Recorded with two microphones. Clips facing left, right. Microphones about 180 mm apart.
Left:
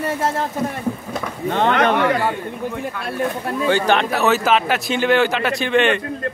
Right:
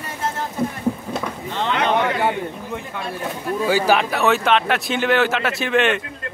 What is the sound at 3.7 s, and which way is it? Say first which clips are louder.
Speech: left 1 dB; 5° right (ahead or behind).